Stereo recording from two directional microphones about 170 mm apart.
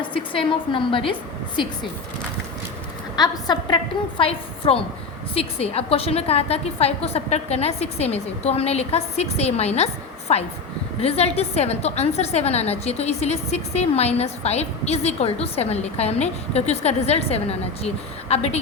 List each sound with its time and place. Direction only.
0.0 s a woman's voice: 30° left (ahead or behind)
3.2 s a woman's voice: 25° left (ahead or behind)